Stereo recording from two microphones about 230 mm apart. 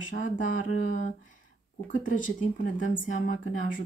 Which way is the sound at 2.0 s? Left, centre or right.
Left.